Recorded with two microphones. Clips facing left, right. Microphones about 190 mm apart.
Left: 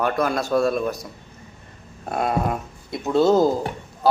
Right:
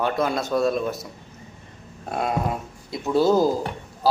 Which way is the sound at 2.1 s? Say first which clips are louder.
Left 2 dB; centre (ahead or behind).